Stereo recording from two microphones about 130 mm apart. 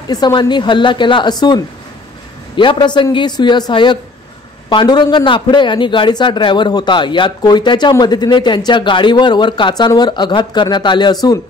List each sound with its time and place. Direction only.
0.1 s a man's voice: 35° left (ahead or behind)